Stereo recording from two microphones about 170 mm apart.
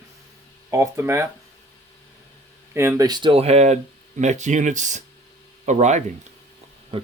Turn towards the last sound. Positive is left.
turn(degrees=-45)  # may be behind; listen again after turning